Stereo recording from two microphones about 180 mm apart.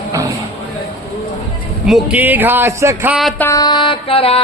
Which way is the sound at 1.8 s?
5° right (ahead or behind).